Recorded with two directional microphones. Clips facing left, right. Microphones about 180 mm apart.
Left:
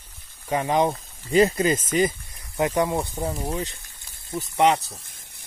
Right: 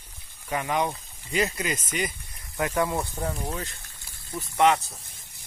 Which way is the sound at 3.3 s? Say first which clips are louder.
Left 4 dB; 10° left (ahead or behind).